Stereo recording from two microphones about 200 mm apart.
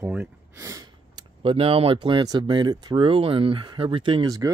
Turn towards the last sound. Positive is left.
turn(degrees=-20)  # may be behind; listen again after turning